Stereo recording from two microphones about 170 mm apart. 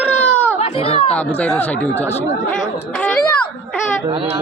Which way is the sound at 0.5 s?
35° left (ahead or behind).